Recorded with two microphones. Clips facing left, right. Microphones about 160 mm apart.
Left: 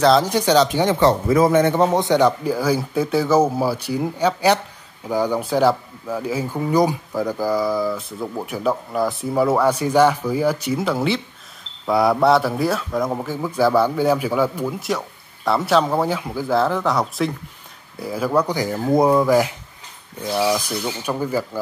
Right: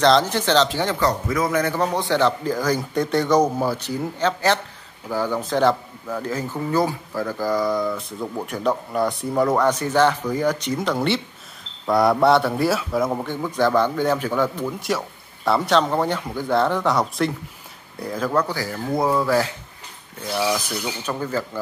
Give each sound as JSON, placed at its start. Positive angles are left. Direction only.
{"t": 0.0, "sound": "a man's voice", "side_deg": 10}